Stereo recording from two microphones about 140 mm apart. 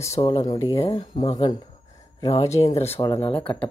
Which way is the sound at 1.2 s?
30° left (ahead or behind).